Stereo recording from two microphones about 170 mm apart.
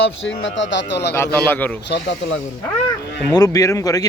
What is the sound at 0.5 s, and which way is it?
Speech, 90° left.